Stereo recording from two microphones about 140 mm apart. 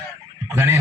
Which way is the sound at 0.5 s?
20° right (ahead or behind).